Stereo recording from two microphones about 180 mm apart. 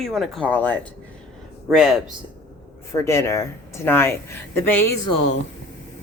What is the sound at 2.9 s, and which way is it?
Speech, 15° left (ahead or behind).